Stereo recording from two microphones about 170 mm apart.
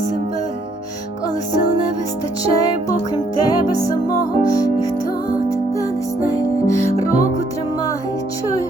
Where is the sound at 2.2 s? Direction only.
20° left (ahead or behind).